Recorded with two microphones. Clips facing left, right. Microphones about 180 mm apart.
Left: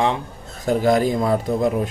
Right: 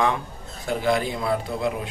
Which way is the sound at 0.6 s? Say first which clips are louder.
Left 6 dB; 40° left (ahead or behind).